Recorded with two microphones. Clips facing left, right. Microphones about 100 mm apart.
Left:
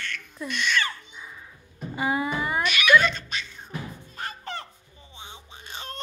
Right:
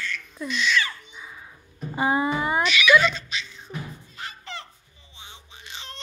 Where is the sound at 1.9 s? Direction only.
30° right (ahead or behind).